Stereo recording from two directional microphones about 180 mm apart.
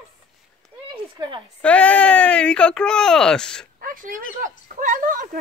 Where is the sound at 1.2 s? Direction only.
25° right (ahead or behind).